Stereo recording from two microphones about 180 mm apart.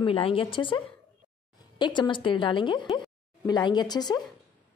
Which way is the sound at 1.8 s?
25° left (ahead or behind).